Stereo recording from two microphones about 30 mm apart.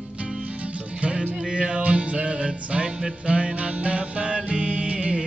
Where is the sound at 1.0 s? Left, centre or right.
Right.